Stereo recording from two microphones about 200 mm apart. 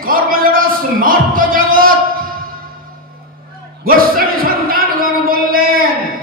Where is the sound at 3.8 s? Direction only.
45° right (ahead or behind).